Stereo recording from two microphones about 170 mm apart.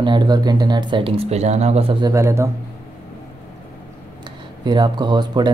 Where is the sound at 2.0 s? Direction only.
15° right (ahead or behind).